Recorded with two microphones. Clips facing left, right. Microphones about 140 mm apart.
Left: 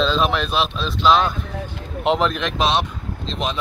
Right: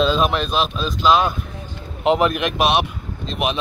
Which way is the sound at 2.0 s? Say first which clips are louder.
Right 2 dB; 5° right (ahead or behind).